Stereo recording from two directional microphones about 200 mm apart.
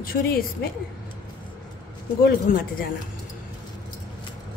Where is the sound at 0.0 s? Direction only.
45° left (ahead or behind).